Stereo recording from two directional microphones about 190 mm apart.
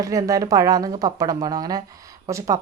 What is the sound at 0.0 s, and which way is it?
A woman's voice, 15° right (ahead or behind).